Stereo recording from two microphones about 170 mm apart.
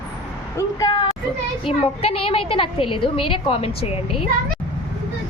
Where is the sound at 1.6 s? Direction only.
35° left (ahead or behind).